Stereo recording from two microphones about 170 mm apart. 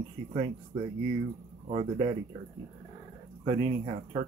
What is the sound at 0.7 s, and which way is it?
Speech, 30° right (ahead or behind).